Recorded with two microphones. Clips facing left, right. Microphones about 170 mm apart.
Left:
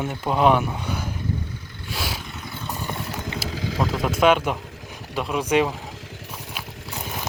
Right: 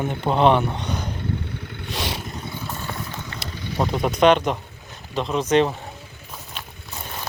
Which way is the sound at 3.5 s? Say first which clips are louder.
Left 4 dB; 90° left.